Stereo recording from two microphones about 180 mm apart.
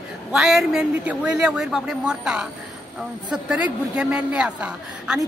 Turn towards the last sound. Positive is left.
turn(degrees=-5)  # may be behind; listen again after turning